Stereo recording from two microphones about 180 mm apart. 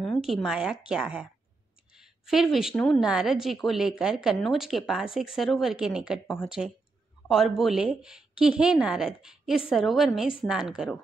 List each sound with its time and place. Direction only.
0.0 s a woman's voice: centre (ahead or behind)